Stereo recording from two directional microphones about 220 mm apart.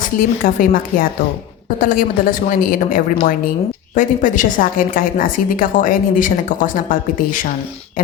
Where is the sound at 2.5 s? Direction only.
40° left (ahead or behind).